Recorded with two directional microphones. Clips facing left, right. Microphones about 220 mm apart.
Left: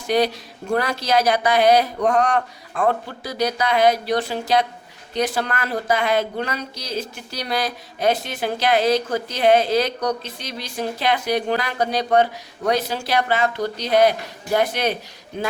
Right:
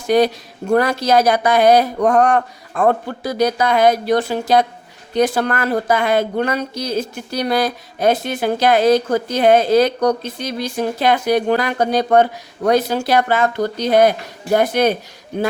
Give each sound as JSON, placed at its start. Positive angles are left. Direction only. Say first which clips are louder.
{"t": 0.1, "sound": "speech", "louder": "right 5 dB", "side_deg": -50}